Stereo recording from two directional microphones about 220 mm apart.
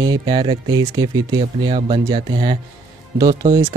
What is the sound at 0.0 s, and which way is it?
Speech, 20° right (ahead or behind).